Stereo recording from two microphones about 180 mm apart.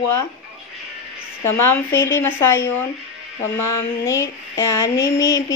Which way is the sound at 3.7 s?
15° left (ahead or behind).